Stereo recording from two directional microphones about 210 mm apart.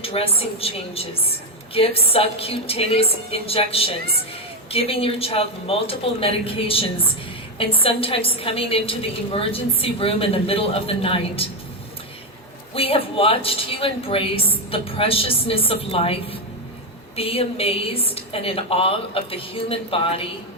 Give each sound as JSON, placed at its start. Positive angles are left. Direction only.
{"t": 0.0, "sound": "a woman's voice", "side_deg": 30}
{"t": 12.7, "sound": "a woman's voice", "side_deg": 25}